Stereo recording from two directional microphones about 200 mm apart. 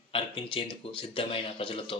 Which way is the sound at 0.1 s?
25° left (ahead or behind).